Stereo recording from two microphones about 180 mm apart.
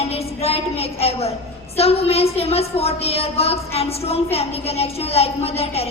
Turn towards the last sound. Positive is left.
turn(degrees=35)  # may be behind; listen again after turning